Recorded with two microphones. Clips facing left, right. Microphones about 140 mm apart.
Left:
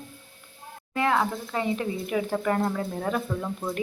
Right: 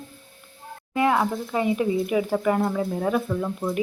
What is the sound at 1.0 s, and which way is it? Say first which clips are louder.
Speech: right 3 dB; 15° right (ahead or behind).